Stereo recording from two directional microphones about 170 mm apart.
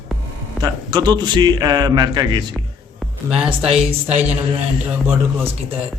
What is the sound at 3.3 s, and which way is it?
Speech, 5° right (ahead or behind).